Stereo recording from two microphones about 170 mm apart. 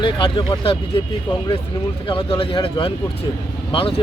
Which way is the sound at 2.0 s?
30° left (ahead or behind).